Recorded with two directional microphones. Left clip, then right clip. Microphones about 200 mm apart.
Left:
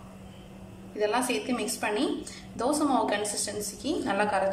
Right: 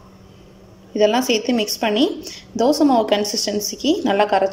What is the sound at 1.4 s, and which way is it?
Speech, 30° right (ahead or behind).